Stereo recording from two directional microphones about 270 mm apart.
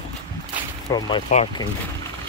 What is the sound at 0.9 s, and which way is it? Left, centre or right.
Speech, centre.